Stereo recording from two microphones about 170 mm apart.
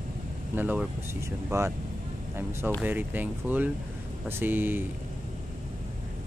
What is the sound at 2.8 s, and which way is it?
Speech, 10° right (ahead or behind).